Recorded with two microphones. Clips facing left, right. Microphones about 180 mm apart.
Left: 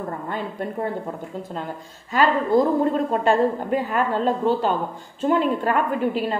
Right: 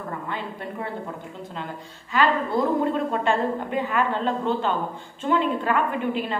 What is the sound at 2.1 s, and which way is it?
A woman's voice, 40° left (ahead or behind).